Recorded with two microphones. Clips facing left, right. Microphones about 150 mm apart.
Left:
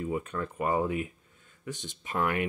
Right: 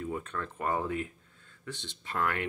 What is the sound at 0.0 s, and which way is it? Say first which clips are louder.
Speech: left 4 dB; 10° left (ahead or behind).